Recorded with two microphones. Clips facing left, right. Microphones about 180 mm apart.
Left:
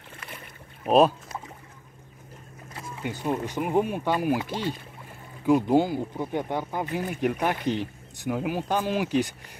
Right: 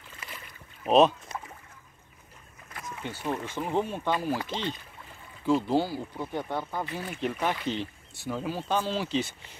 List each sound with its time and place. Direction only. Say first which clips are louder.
0.1 s boat: left 2 dB; 55° left (ahead or behind)
0.8 s speech: left 1 dB; 5° left (ahead or behind)
3.0 s speech: left 4 dB; 15° left (ahead or behind)